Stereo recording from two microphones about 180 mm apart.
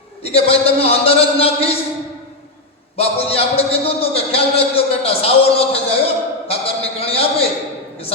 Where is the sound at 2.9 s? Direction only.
35° left (ahead or behind).